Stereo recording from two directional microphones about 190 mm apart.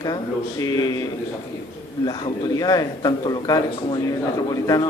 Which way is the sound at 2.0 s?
20° left (ahead or behind).